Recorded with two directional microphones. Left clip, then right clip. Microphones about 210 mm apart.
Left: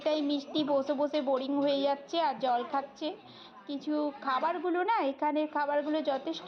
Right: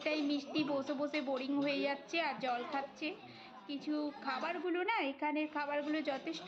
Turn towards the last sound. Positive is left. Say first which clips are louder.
# left 7 dB
turn(degrees=15)  # may be behind; listen again after turning